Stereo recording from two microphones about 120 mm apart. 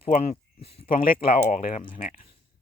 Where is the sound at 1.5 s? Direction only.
90° left.